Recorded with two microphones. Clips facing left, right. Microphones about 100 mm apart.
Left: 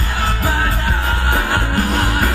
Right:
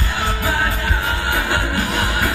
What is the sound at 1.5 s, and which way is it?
Music, 35° left (ahead or behind).